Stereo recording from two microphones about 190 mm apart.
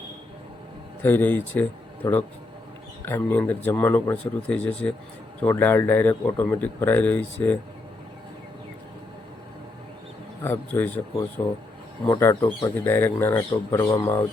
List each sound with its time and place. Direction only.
1.0 s speech: 10° left (ahead or behind)
10.4 s speech: 10° left (ahead or behind)
12.1 s speech: 20° left (ahead or behind)
12.7 s speech: 10° left (ahead or behind)